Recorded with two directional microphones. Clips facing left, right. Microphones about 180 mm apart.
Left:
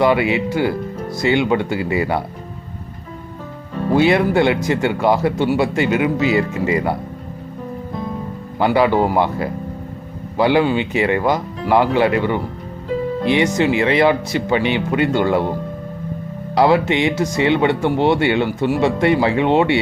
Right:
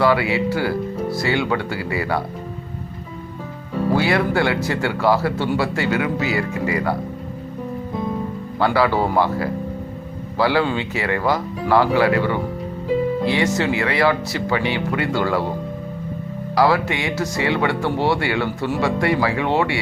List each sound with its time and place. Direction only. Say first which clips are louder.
0.0 s speech: left 2 dB; 20° left (ahead or behind)
3.9 s speech: left 6 dB; 20° left (ahead or behind)
8.5 s speech: left 3 dB; 20° left (ahead or behind)
16.6 s speech: left 4 dB; 20° left (ahead or behind)